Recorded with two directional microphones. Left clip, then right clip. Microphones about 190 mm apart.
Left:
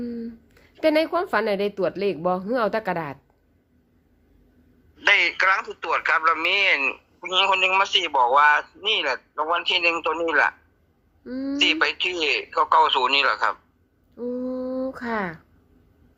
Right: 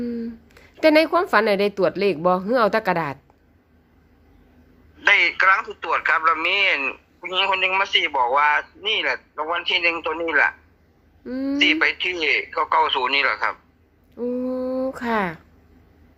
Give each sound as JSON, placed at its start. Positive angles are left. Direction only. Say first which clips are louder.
{"t": 0.0, "sound": "speech", "louder": "right 4 dB", "side_deg": -15}
{"t": 4.9, "sound": "speech", "louder": "right 2 dB", "side_deg": 0}
{"t": 11.2, "sound": "speech", "louder": "right 3 dB", "side_deg": -20}
{"t": 11.5, "sound": "speech", "louder": "right 2 dB", "side_deg": 0}
{"t": 14.2, "sound": "a sound", "louder": "right 4 dB", "side_deg": -20}